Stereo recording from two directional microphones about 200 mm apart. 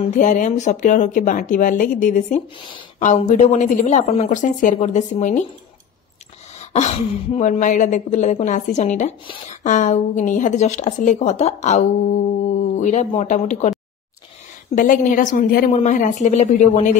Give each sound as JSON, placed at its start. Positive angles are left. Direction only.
{"t": 0.1, "sound": "a woman's voice", "side_deg": 40}
{"t": 6.6, "sound": "a woman's voice", "side_deg": 35}
{"t": 14.8, "sound": "a woman's voice", "side_deg": 40}